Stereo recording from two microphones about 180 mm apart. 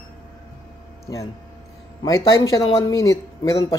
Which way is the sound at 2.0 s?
20° left (ahead or behind).